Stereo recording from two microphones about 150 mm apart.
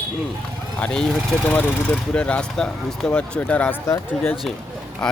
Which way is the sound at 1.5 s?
10° left (ahead or behind).